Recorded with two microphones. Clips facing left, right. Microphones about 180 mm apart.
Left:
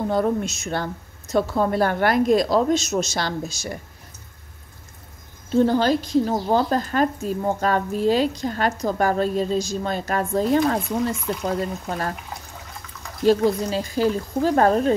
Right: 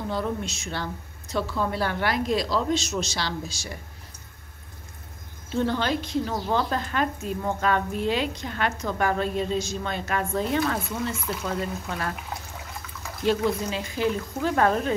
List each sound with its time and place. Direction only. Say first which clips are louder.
0.1 s a woman's voice: left 6 dB; 50° left (ahead or behind)
5.5 s speech: left 7 dB; 40° left (ahead or behind)
13.2 s speech: left 6 dB; 35° left (ahead or behind)